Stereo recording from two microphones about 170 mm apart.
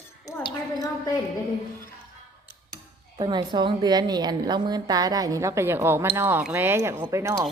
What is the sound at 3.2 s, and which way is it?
A woman's voice, 25° right (ahead or behind).